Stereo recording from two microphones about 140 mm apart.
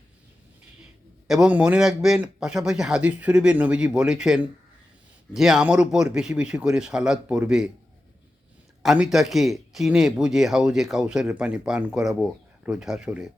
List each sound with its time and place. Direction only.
1.3 s a man's voice: 5° right (ahead or behind)
8.8 s speech: centre (ahead or behind)